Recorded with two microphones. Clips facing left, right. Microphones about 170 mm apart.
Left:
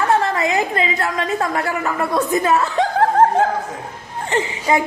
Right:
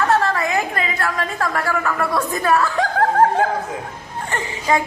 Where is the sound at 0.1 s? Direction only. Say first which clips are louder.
Left 1 dB; 20° left (ahead or behind).